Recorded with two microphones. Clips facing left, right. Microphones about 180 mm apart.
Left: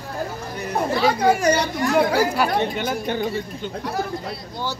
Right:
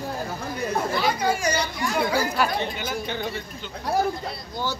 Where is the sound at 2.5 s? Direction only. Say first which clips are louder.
Left 5 dB; 50° left (ahead or behind).